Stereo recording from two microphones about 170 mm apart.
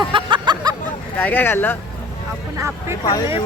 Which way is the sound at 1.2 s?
10° left (ahead or behind).